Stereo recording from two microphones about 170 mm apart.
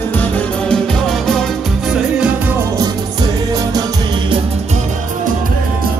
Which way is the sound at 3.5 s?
20° right (ahead or behind).